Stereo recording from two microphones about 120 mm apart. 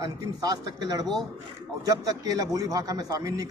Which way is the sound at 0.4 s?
30° right (ahead or behind).